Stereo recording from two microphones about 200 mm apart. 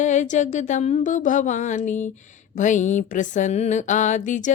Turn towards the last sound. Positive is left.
turn(degrees=40)  # may be behind; listen again after turning